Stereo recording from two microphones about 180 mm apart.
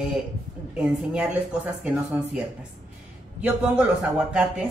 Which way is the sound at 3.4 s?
10° right (ahead or behind).